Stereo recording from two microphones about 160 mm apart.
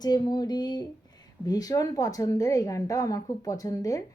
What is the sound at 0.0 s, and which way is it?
Speech, 25° left (ahead or behind).